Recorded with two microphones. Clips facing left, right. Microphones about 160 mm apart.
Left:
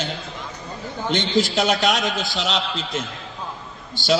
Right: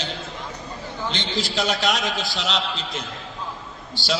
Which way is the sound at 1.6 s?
Centre (ahead or behind).